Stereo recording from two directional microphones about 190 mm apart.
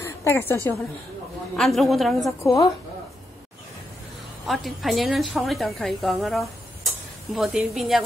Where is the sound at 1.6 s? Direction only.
Centre (ahead or behind).